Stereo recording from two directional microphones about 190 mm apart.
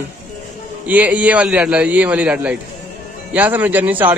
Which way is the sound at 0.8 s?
10° right (ahead or behind).